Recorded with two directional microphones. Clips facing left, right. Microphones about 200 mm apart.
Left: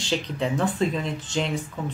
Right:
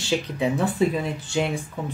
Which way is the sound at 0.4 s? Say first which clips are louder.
Right 2 dB; 10° right (ahead or behind).